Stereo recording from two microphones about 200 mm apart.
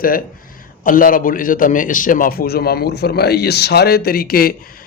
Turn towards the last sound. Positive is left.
turn(degrees=50)  # may be behind; listen again after turning